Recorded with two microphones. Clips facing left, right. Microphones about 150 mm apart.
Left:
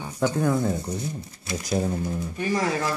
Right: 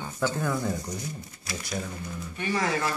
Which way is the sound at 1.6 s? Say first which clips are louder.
Left 10 dB; 40° left (ahead or behind).